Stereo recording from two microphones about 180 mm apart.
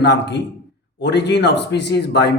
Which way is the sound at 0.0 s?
70° left (ahead or behind).